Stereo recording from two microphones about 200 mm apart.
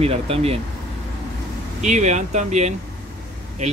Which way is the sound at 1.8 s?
35° right (ahead or behind).